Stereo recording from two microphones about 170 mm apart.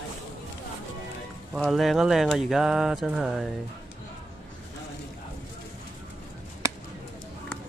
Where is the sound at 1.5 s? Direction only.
Centre (ahead or behind).